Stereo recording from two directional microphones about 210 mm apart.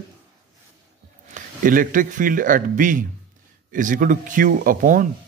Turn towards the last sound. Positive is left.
turn(degrees=-40)  # may be behind; listen again after turning